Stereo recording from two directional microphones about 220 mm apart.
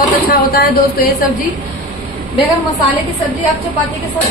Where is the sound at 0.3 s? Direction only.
40° left (ahead or behind).